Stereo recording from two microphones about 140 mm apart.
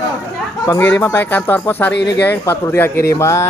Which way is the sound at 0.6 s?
20° left (ahead or behind).